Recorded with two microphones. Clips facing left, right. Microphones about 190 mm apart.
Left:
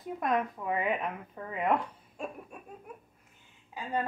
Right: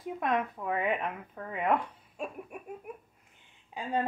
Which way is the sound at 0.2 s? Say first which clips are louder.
Left 1 dB; centre (ahead or behind).